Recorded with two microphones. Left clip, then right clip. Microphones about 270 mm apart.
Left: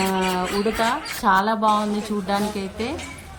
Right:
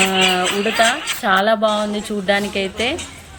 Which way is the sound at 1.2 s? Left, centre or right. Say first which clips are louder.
Right 3 dB; centre.